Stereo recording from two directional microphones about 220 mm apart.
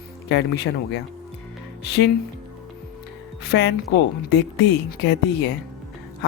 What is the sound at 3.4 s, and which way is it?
Speech, 50° left (ahead or behind).